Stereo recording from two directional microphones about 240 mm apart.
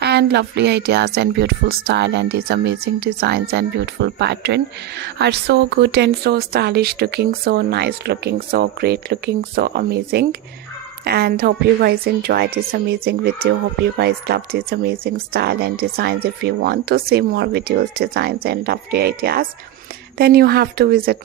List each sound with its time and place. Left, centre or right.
0.0 s a woman's voice: right